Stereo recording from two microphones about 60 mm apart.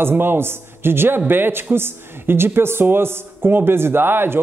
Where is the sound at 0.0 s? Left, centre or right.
Right.